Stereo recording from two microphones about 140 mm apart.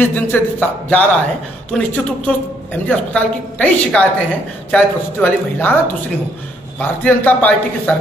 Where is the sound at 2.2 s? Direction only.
10° left (ahead or behind).